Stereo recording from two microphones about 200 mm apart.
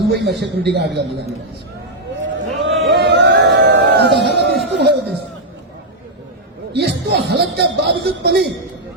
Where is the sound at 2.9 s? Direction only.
55° right (ahead or behind).